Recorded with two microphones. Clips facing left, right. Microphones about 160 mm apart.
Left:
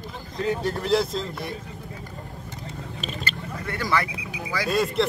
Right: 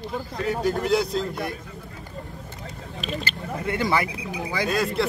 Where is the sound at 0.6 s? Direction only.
Centre (ahead or behind).